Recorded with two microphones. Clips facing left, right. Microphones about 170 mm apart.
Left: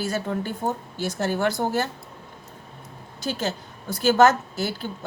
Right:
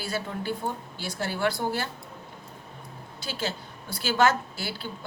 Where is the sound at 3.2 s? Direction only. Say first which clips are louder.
Left 5 dB; 45° left (ahead or behind).